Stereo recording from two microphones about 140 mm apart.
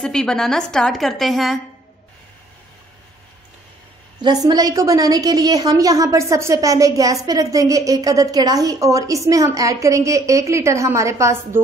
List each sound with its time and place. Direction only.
0.0 s a woman's voice: 5° left (ahead or behind)
4.2 s a woman's voice: 30° right (ahead or behind)